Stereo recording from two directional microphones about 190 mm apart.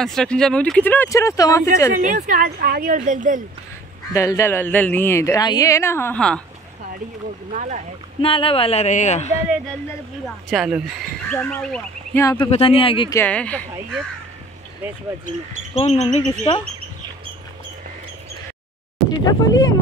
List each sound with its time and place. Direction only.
0.0 s a woman's voice: 5° left (ahead or behind)
2.0 s a woman's voice: 40° right (ahead or behind)
4.1 s a woman's voice: 15° left (ahead or behind)
7.5 s speech: 40° right (ahead or behind)
8.2 s a man's voice: 30° left (ahead or behind)
10.2 s speech: centre (ahead or behind); by 12.4 s 15° left (ahead or behind)
12.4 s speech: 30° left (ahead or behind)
13.1 s a woman's voice: 10° left (ahead or behind)
15.7 s a man's voice: 35° left (ahead or behind)
19.0 s speech: 20° left (ahead or behind)